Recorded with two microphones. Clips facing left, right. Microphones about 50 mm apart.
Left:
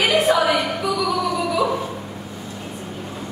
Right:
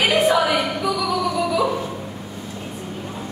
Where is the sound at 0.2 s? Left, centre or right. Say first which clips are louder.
Even; centre.